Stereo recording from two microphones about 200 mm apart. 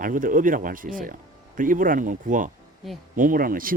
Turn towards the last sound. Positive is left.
turn(degrees=-45)  # may be behind; listen again after turning